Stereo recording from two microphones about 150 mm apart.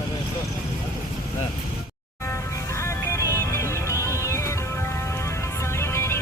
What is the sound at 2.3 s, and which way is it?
Music, 20° left (ahead or behind).